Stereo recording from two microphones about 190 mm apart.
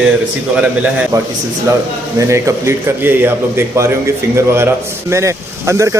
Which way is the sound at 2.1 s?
15° right (ahead or behind).